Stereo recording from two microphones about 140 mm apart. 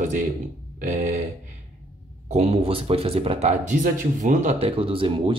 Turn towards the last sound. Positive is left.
turn(degrees=-40)  # may be behind; listen again after turning